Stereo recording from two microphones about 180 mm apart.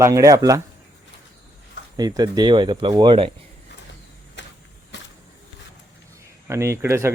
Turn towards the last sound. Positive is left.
turn(degrees=-15)  # may be behind; listen again after turning